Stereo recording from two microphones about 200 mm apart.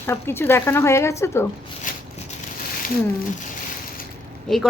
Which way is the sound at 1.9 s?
40° left (ahead or behind).